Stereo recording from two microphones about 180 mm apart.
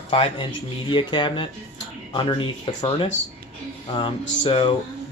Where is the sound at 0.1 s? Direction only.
25° left (ahead or behind).